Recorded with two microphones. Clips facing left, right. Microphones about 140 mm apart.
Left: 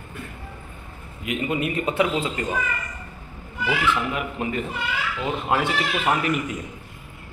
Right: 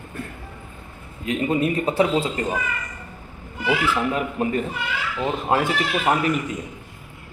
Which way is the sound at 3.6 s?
35° right (ahead or behind).